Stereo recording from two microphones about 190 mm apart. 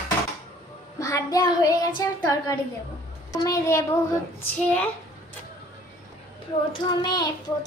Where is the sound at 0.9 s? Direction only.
15° left (ahead or behind).